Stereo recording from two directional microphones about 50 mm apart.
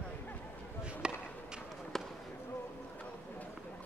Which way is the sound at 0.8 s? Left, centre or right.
Centre.